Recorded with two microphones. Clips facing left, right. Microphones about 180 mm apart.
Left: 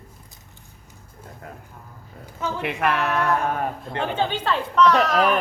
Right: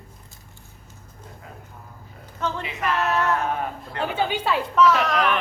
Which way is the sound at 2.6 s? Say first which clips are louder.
Left 5 dB; 60° left (ahead or behind).